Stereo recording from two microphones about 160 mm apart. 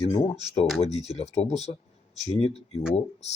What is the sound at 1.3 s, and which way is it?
Speech, 40° left (ahead or behind).